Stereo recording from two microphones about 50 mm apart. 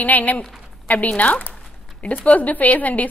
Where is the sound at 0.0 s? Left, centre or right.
Left.